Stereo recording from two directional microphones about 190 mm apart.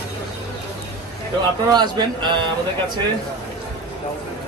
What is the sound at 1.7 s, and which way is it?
Speech, 25° right (ahead or behind).